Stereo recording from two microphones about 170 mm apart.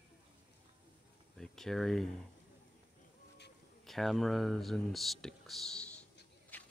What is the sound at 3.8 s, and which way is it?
Speech, centre (ahead or behind).